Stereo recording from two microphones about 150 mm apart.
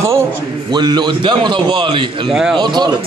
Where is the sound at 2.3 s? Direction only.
Centre (ahead or behind).